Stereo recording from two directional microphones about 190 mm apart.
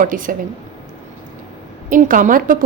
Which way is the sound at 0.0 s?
45° right (ahead or behind).